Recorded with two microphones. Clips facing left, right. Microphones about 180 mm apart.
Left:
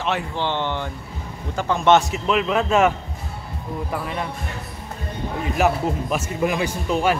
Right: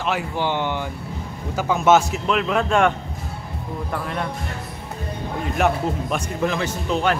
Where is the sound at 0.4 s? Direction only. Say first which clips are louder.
Right 1 dB; 10° right (ahead or behind).